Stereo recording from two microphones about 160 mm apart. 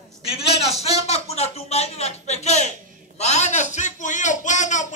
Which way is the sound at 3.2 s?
45° left (ahead or behind).